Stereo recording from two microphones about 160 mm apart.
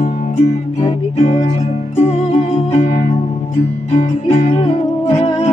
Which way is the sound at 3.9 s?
40° left (ahead or behind).